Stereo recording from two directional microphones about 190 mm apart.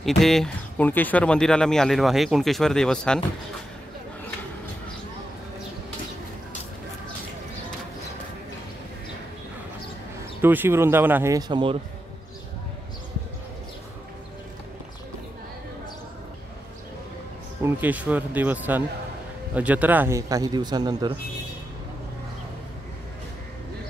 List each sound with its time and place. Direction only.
0.2 s speech: centre (ahead or behind)
10.4 s a man's voice: 10° right (ahead or behind); by 11.8 s 25° right (ahead or behind)
17.6 s a man's voice: 10° right (ahead or behind)